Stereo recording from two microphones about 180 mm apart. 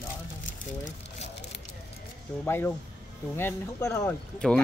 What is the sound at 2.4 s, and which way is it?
Speech, 15° left (ahead or behind).